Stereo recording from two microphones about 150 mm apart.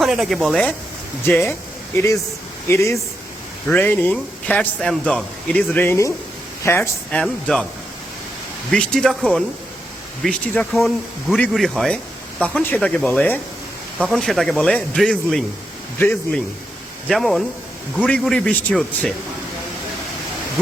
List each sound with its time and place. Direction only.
0.0 s speech: centre (ahead or behind)
1.2 s a man's voice: 15° left (ahead or behind)
2.6 s a man's voice: 20° left (ahead or behind)
8.7 s a man's voice: 5° left (ahead or behind)
14.1 s a man's voice: centre (ahead or behind)
17.1 s speech: centre (ahead or behind)